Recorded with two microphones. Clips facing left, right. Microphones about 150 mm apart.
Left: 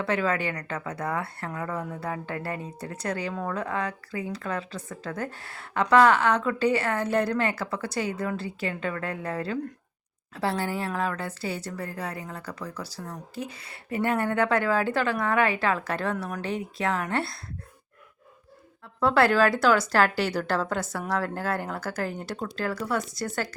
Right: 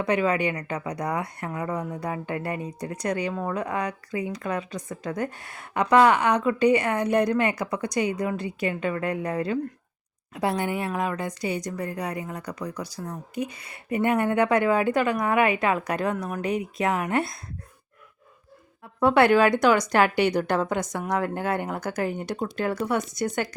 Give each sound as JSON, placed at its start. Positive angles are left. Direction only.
{"t": 0.0, "sound": "speech", "side_deg": -15}
{"t": 18.9, "sound": "speech", "side_deg": -20}